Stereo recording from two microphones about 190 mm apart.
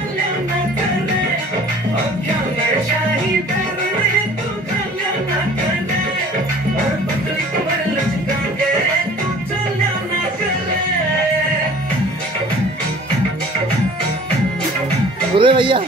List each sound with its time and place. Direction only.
15.3 s speech: 25° right (ahead or behind)